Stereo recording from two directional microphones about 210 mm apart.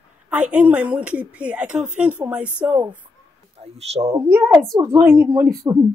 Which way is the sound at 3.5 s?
30° right (ahead or behind).